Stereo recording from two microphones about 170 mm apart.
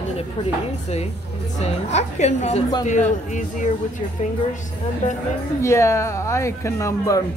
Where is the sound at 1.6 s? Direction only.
40° left (ahead or behind).